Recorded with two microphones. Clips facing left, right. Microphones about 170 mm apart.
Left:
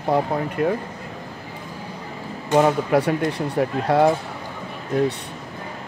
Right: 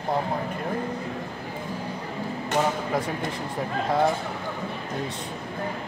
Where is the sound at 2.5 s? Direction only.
70° left (ahead or behind).